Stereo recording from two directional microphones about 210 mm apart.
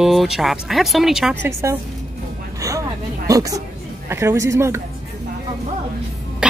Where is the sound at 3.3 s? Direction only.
15° right (ahead or behind).